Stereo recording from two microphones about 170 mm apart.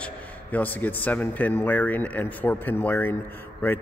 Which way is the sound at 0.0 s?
10° left (ahead or behind).